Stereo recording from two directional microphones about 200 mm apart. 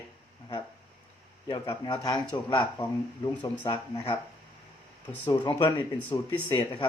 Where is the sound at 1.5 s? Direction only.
25° left (ahead or behind).